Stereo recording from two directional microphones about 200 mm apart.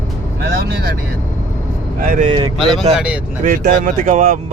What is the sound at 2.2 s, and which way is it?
Speech, 25° right (ahead or behind).